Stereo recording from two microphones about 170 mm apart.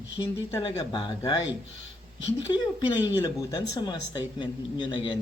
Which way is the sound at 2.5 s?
25° left (ahead or behind).